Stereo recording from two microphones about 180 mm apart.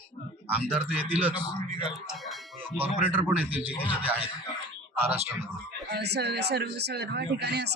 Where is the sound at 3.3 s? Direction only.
10° right (ahead or behind).